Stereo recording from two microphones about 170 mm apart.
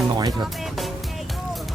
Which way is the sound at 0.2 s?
25° right (ahead or behind).